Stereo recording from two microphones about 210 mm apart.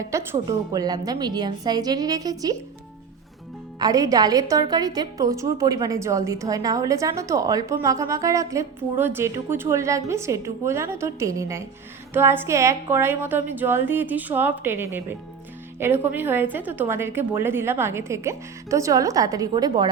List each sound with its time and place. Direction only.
0.1 s a woman's voice: 15° right (ahead or behind)
3.8 s a woman's voice: 15° right (ahead or behind)